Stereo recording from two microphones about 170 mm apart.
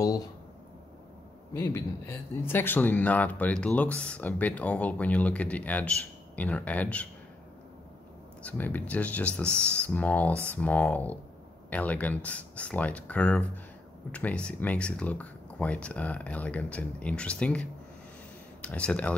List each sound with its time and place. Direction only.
0.0 s speech: 20° left (ahead or behind)
1.5 s speech: 15° left (ahead or behind)
8.4 s speech: 10° left (ahead or behind)